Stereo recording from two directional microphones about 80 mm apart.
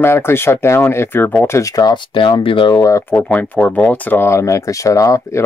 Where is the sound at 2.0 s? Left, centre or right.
Left.